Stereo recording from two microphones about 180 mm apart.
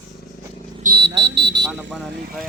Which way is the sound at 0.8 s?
60° right (ahead or behind).